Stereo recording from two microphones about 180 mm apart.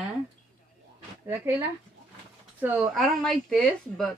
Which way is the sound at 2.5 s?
5° right (ahead or behind).